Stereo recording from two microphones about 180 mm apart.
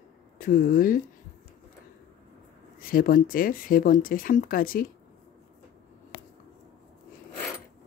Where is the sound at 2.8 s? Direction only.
50° left (ahead or behind).